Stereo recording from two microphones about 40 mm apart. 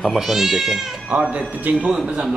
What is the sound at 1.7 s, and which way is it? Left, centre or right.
Speech, right.